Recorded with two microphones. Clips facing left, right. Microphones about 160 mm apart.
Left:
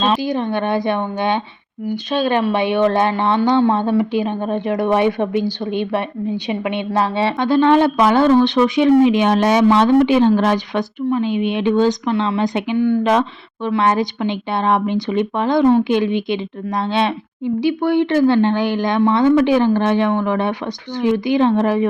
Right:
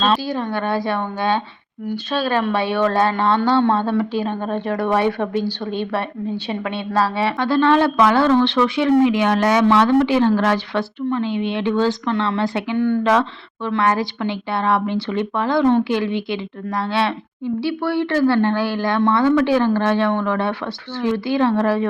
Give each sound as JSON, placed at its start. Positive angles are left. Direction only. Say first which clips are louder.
{"t": 0.0, "sound": "a woman's voice", "louder": "left 2 dB", "side_deg": 15}
{"t": 12.7, "sound": "a woman's voice", "louder": "left 2 dB", "side_deg": 5}
{"t": 13.7, "sound": "a woman's voice", "louder": "left 2 dB", "side_deg": 20}